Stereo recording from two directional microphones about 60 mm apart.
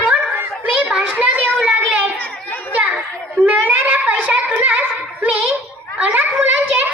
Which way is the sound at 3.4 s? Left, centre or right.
Right.